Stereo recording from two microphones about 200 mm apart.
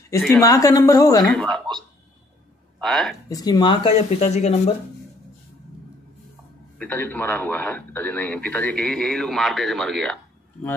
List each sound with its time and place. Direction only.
0.4 s speech: 15° left (ahead or behind)
1.3 s speech: 5° left (ahead or behind)
3.3 s speech: 20° left (ahead or behind)
6.8 s speech: 10° left (ahead or behind)